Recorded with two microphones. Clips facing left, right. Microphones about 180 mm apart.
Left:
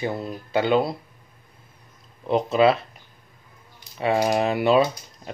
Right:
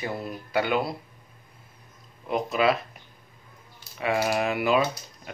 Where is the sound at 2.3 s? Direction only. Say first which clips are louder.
Left 5 dB; 30° left (ahead or behind).